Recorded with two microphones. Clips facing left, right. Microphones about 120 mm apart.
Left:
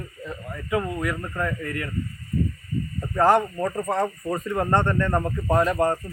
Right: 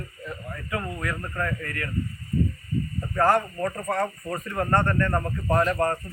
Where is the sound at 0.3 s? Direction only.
20° left (ahead or behind).